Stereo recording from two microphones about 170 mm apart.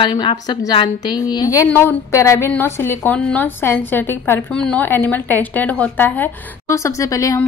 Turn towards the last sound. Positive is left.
turn(degrees=20)  # may be behind; listen again after turning